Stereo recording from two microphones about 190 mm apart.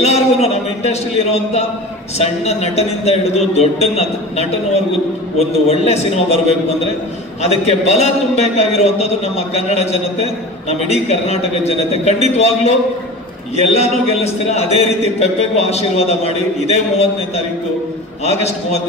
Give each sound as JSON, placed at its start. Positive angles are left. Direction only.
{"t": 0.0, "sound": "a sound", "side_deg": 35}
{"t": 2.1, "sound": "a man's voice", "side_deg": 35}
{"t": 13.7, "sound": "a man's voice", "side_deg": 35}
{"t": 18.2, "sound": "a man's voice", "side_deg": 35}